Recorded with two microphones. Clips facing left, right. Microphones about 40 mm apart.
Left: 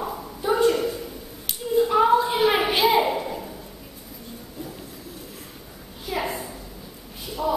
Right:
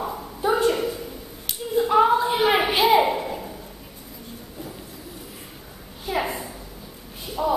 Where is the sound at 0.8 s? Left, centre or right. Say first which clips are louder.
Even; centre.